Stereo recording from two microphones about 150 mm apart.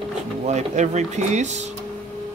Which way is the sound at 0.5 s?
50° right (ahead or behind).